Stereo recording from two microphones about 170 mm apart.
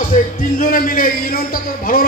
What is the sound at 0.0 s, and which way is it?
A man's voice, 50° left (ahead or behind).